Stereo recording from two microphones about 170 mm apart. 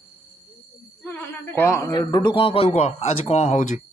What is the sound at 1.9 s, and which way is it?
Speech, 25° left (ahead or behind).